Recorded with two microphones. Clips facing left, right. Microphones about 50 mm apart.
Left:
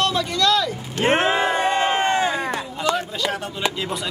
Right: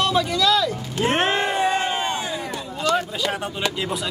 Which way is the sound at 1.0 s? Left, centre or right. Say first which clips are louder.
Left 3 dB; left.